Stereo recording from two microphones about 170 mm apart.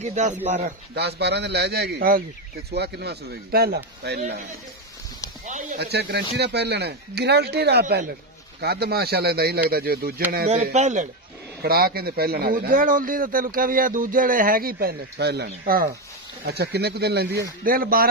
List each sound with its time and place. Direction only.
0.0 s a man's voice: 45° right (ahead or behind)
0.9 s a man's voice: 75° right (ahead or behind)
5.8 s a man's voice: 85° right; by 10.2 s 65° right (ahead or behind)
10.7 s a man's voice: 45° right (ahead or behind)
11.6 s a man's voice: 65° right (ahead or behind)
16.4 s a man's voice: 75° right (ahead or behind)
17.6 s a man's voice: 60° right (ahead or behind)